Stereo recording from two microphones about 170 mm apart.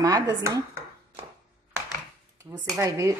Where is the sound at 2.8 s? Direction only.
20° right (ahead or behind).